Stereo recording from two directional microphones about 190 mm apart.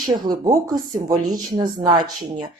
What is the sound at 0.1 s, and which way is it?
Speech, 20° right (ahead or behind).